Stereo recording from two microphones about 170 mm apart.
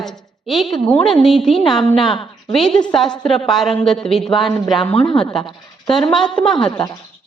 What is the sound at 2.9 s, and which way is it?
A woman's voice, 5° left (ahead or behind).